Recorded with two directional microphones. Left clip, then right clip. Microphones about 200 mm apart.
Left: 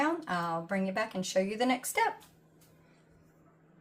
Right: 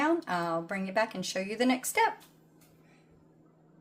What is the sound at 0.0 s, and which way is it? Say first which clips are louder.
Speech: right 2 dB; 35° right (ahead or behind).